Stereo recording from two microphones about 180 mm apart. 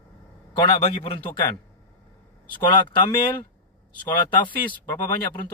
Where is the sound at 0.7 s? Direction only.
35° left (ahead or behind).